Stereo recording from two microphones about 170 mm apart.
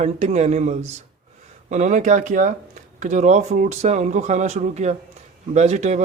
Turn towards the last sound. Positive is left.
turn(degrees=-40)  # may be behind; listen again after turning